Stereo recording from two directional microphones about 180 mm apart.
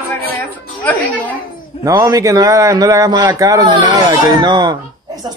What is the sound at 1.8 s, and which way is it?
A man's voice, 20° right (ahead or behind).